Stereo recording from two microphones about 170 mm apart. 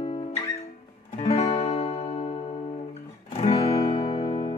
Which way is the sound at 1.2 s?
40° left (ahead or behind).